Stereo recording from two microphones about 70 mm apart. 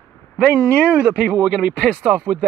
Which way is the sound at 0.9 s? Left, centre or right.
Centre.